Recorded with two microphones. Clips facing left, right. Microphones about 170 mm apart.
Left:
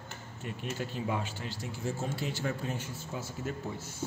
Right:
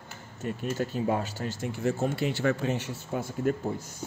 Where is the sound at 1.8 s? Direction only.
65° right (ahead or behind).